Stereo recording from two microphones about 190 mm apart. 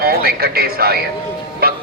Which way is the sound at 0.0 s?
55° right (ahead or behind).